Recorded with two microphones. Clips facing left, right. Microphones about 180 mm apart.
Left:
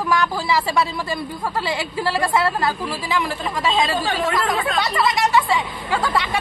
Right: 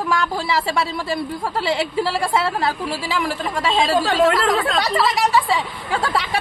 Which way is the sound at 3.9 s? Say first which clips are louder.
Right 6 dB; 85° right.